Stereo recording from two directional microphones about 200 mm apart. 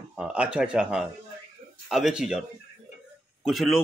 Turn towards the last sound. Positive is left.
turn(degrees=0)  # may be behind; listen again after turning